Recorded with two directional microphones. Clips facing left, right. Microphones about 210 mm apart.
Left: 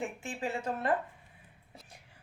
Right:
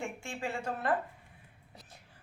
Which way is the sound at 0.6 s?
20° left (ahead or behind).